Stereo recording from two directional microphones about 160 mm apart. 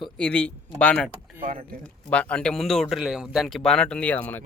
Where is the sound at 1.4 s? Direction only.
60° right (ahead or behind).